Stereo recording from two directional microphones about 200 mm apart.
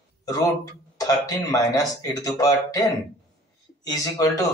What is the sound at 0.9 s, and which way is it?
A man's voice, 20° left (ahead or behind).